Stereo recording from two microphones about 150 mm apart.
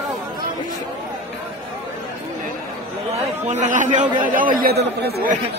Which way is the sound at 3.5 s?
55° right (ahead or behind).